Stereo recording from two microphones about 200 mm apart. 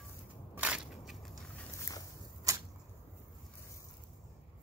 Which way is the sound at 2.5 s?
15° right (ahead or behind).